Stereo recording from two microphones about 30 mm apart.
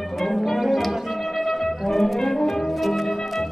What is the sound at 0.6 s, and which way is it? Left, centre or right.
Music, centre.